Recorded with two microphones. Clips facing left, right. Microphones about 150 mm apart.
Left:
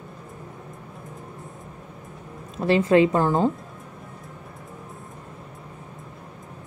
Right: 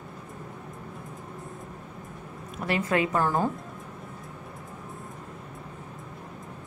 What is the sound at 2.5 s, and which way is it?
A woman's voice, 30° left (ahead or behind).